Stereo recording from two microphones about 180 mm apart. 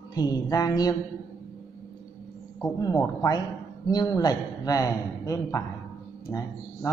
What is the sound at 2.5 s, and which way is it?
A woman's voice, 20° left (ahead or behind).